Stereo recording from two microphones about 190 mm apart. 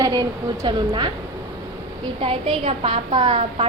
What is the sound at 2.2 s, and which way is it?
A woman's voice, 25° right (ahead or behind).